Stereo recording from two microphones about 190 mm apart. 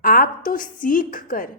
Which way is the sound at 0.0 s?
50° left (ahead or behind).